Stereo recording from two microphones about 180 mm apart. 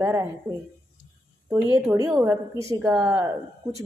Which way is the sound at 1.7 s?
15° right (ahead or behind).